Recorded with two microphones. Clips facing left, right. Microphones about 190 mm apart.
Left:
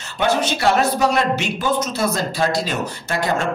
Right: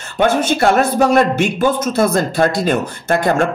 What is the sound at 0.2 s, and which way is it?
Speech, 50° right (ahead or behind).